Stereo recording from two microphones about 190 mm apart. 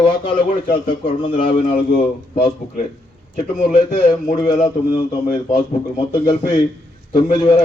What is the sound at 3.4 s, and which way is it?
Speech, 40° left (ahead or behind).